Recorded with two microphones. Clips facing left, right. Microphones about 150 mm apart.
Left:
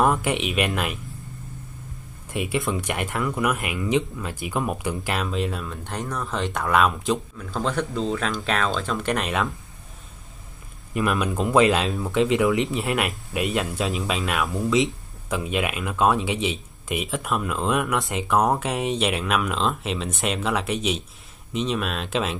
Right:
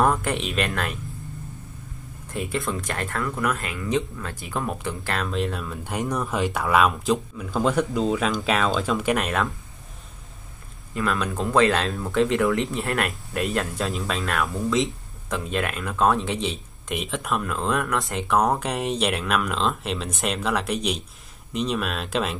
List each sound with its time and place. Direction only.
0.0 s speech: 5° left (ahead or behind)
2.3 s speech: 10° left (ahead or behind)
11.0 s speech: 15° left (ahead or behind); by 22.4 s centre (ahead or behind)